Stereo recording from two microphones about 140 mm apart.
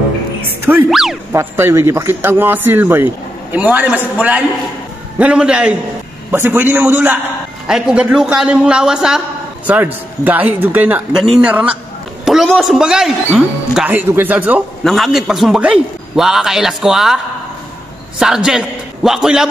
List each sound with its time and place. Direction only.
0.8 s a man's voice: centre (ahead or behind)
1.3 s a man's voice: 15° right (ahead or behind)
10.2 s a man's voice: 10° right (ahead or behind)
13.8 s a man's voice: 15° right (ahead or behind)
14.8 s a man's voice: centre (ahead or behind)
18.2 s a man's voice: 5° right (ahead or behind)